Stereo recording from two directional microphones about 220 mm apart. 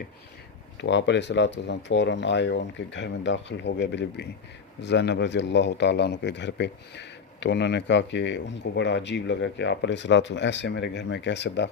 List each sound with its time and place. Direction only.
0.8 s speech: 55° left (ahead or behind)